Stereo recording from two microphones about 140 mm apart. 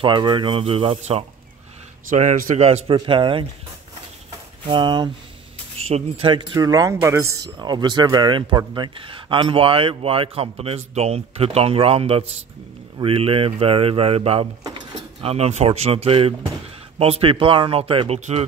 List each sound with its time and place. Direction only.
0.0 s speech: 35° right (ahead or behind)
2.0 s speech: 65° right (ahead or behind)
2.6 s speech: 45° right (ahead or behind)
4.6 s speech: 35° right (ahead or behind)
5.9 s speech: 50° right (ahead or behind)
6.3 s speech: 25° right (ahead or behind); by 18.4 s 50° right (ahead or behind)